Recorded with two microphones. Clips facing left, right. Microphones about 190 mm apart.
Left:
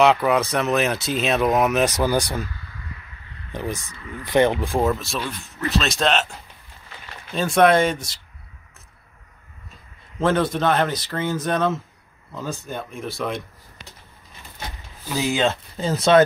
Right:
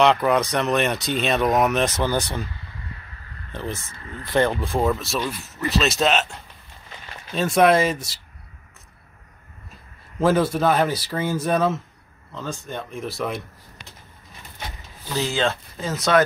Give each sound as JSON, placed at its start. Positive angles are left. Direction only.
{"t": 0.0, "sound": "speech", "side_deg": 5}
{"t": 3.5, "sound": "speech", "side_deg": 15}
{"t": 4.8, "sound": "speech", "side_deg": 0}
{"t": 10.1, "sound": "speech", "side_deg": -5}
{"t": 12.4, "sound": "speech", "side_deg": 5}
{"t": 15.1, "sound": "speech", "side_deg": 15}
{"t": 15.8, "sound": "speech", "side_deg": 30}